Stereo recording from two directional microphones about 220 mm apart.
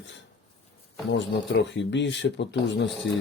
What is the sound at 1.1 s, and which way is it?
Speech, 55° left (ahead or behind).